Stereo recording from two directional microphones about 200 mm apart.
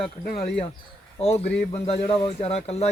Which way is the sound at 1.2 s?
30° left (ahead or behind).